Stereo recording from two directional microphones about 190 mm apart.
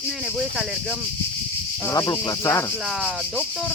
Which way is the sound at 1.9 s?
20° left (ahead or behind).